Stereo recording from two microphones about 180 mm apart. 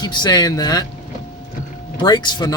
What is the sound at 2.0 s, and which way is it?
Speech, 20° left (ahead or behind).